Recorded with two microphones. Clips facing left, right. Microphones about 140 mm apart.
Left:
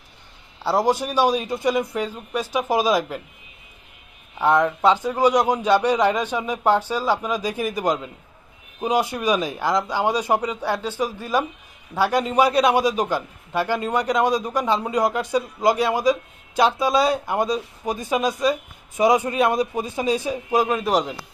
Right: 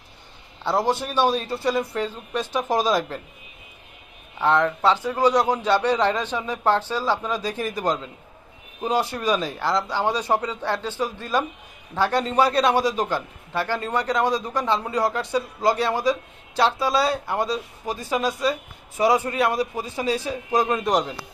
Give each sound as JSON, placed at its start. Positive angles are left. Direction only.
{"t": 0.6, "sound": "a man's voice", "side_deg": 10}
{"t": 4.4, "sound": "a man's voice", "side_deg": 15}